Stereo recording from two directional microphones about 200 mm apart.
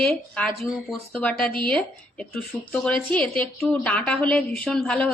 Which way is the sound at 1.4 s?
25° right (ahead or behind).